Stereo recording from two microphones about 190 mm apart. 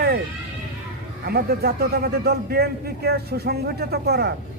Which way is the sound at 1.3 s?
55° right (ahead or behind).